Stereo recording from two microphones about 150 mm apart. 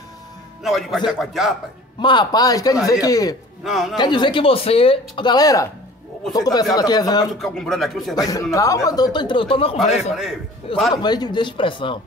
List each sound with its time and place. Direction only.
0.7 s speech: centre (ahead or behind)
2.0 s speech: 30° left (ahead or behind)
3.6 s speech: centre (ahead or behind)
3.9 s speech: 30° left (ahead or behind)
7.3 s speech: 5° left (ahead or behind)
8.2 s a man's voice: 25° left (ahead or behind); by 10.1 s 45° left (ahead or behind)
11.0 s speech: 30° left (ahead or behind)